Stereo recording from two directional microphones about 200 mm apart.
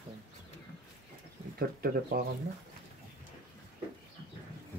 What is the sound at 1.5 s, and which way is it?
Speech, 45° right (ahead or behind).